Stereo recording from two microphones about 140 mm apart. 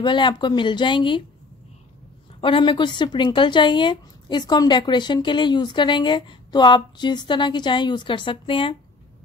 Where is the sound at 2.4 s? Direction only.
35° left (ahead or behind).